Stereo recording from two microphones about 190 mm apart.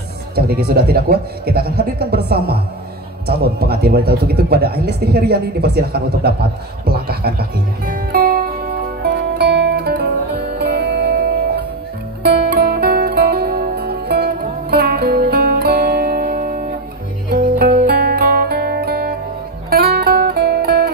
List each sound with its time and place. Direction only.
0.4 s speech: 55° right (ahead or behind)
3.3 s a sound: 55° right (ahead or behind)
12.2 s music: 55° right (ahead or behind)